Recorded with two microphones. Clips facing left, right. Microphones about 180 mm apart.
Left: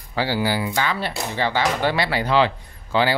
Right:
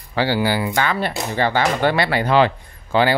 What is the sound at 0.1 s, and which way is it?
Speech, 70° right (ahead or behind).